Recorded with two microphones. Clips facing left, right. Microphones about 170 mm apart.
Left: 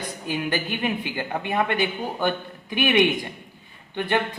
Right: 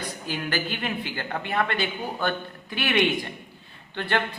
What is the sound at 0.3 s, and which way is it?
A woman's voice, 20° left (ahead or behind).